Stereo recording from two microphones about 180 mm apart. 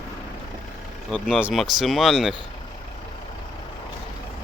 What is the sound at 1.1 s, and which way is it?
Speech, 5° right (ahead or behind).